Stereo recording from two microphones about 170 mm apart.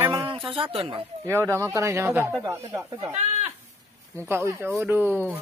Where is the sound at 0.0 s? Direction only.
20° right (ahead or behind).